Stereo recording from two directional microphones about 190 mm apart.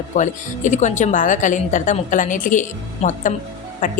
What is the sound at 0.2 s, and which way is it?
A woman's voice, 40° left (ahead or behind).